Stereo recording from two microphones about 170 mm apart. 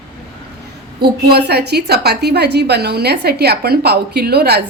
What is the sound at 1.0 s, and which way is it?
A woman's voice, 75° right (ahead or behind).